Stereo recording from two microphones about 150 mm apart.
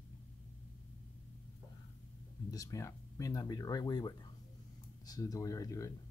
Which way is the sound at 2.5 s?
20° left (ahead or behind).